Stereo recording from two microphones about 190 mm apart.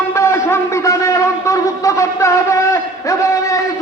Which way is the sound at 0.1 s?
15° left (ahead or behind).